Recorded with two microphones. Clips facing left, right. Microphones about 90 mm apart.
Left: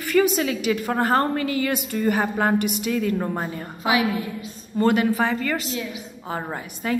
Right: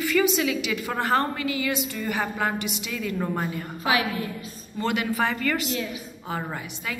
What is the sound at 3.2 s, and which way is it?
Speech, 20° left (ahead or behind).